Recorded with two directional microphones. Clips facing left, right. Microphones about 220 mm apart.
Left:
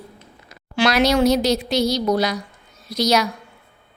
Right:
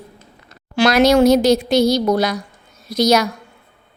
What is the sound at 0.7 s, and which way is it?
Speech, 45° right (ahead or behind).